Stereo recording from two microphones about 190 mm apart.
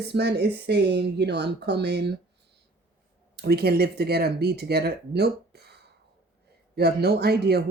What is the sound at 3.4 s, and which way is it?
Speech, 55° right (ahead or behind).